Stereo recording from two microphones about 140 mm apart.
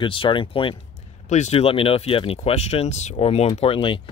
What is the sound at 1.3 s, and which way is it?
Speech, 50° left (ahead or behind).